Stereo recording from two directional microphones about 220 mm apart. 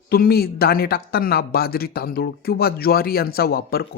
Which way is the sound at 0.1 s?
45° left (ahead or behind).